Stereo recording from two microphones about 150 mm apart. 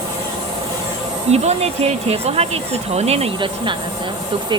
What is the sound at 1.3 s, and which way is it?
Speech, 45° right (ahead or behind).